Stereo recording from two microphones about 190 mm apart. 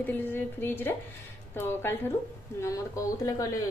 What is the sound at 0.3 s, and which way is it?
Speech, 10° left (ahead or behind).